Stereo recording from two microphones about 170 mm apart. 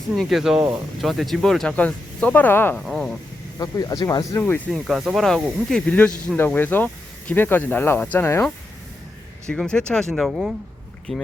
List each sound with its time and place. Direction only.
0.2 s speech: centre (ahead or behind)
3.6 s speech: 20° left (ahead or behind)
4.7 s speech: centre (ahead or behind)